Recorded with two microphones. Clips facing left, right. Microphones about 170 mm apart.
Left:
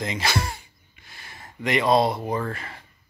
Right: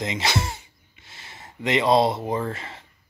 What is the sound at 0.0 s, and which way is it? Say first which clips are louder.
Speech: right 1 dB; 20° right (ahead or behind).